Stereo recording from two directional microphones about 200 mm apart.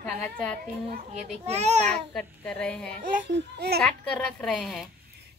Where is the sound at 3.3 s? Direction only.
55° right (ahead or behind).